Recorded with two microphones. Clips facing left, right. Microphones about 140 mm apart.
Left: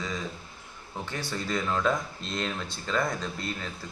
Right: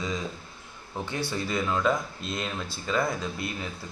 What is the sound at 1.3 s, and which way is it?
Speech, 5° right (ahead or behind).